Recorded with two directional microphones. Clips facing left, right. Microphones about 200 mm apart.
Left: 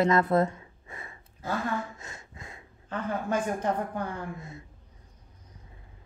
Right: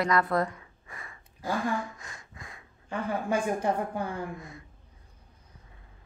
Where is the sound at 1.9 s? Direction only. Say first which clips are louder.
Left 2 dB; 25° left (ahead or behind).